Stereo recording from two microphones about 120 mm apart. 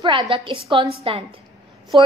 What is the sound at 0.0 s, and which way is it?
Speech, 45° right (ahead or behind).